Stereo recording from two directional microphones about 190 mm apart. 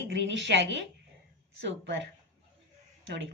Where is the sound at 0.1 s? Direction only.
70° right (ahead or behind).